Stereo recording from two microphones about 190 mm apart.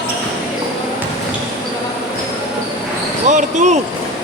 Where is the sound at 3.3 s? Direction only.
40° right (ahead or behind).